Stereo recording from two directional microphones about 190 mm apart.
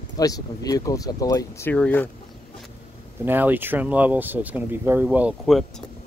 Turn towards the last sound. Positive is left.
turn(degrees=0)  # may be behind; listen again after turning